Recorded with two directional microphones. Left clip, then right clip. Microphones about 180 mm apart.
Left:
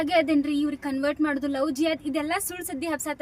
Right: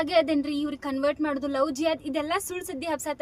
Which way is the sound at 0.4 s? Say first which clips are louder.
Left 3 dB; 15° right (ahead or behind).